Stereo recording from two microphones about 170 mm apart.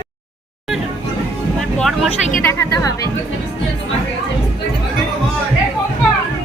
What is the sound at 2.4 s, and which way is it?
Music, 15° left (ahead or behind).